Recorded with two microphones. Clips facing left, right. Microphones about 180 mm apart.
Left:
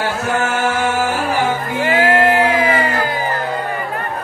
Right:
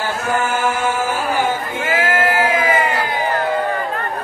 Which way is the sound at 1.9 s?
30° left (ahead or behind).